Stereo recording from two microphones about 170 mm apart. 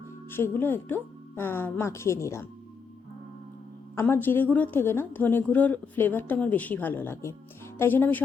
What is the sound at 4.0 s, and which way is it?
Speech, 10° left (ahead or behind).